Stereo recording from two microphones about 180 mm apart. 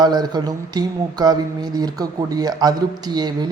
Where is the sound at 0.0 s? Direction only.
25° right (ahead or behind).